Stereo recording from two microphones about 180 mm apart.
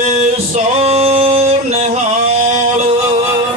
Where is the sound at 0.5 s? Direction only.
35° right (ahead or behind).